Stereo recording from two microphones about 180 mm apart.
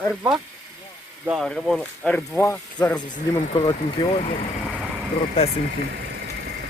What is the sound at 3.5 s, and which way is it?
Speech, 30° left (ahead or behind).